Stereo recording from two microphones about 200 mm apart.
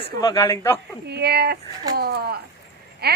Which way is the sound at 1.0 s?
55° right (ahead or behind).